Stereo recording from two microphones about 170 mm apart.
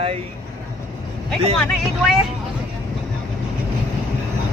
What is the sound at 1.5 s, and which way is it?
Speech, centre (ahead or behind).